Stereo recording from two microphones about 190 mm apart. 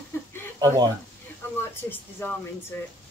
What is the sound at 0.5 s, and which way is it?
Speech, 20° right (ahead or behind).